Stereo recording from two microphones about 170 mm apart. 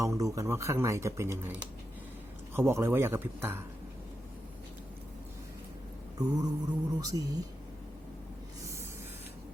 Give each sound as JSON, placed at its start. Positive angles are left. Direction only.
{"t": 0.0, "sound": "speech", "side_deg": -20}
{"t": 2.6, "sound": "speech", "side_deg": -15}
{"t": 6.1, "sound": "speech", "side_deg": -20}